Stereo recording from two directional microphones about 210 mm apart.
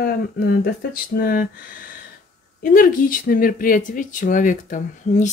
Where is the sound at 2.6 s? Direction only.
40° left (ahead or behind).